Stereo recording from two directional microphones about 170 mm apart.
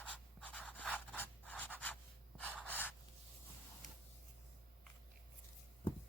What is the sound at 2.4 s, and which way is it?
Gasp, 10° left (ahead or behind).